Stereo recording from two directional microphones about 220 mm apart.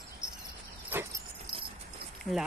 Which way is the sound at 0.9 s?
10° right (ahead or behind).